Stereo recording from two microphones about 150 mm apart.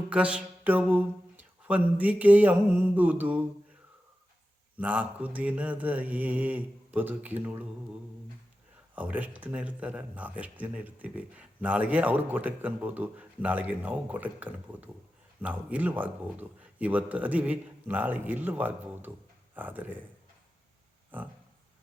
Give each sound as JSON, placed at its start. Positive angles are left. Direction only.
{"t": 0.1, "sound": "speech", "side_deg": -5}
{"t": 4.8, "sound": "speech", "side_deg": -10}
{"t": 9.0, "sound": "speech", "side_deg": -10}
{"t": 21.1, "sound": "a sound", "side_deg": -10}